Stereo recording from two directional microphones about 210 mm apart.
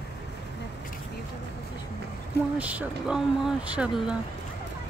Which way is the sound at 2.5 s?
5° right (ahead or behind).